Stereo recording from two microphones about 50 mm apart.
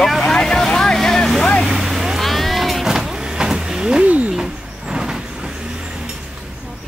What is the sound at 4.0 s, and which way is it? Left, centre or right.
Speech, right.